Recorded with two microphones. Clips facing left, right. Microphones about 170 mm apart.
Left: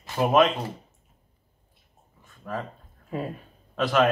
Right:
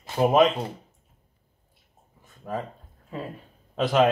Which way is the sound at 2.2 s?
20° right (ahead or behind).